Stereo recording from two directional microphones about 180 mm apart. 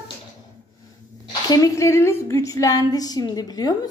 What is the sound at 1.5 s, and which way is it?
A woman's voice, 15° left (ahead or behind).